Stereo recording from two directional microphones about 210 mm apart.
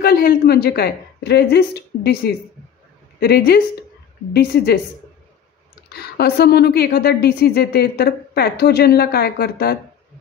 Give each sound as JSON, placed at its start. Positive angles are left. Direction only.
{"t": 0.0, "sound": "a woman's voice", "side_deg": 45}
{"t": 5.9, "sound": "a woman's voice", "side_deg": 50}